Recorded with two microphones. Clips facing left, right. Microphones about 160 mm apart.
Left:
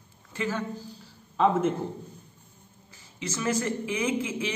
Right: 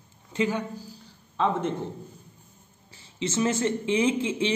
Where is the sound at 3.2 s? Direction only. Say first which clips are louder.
Right 4 dB; 25° right (ahead or behind).